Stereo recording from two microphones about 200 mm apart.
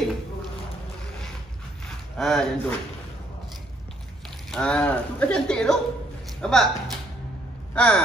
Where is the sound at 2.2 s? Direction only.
Centre (ahead or behind).